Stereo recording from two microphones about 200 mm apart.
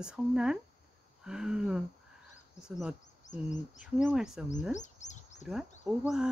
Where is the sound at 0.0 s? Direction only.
5° right (ahead or behind).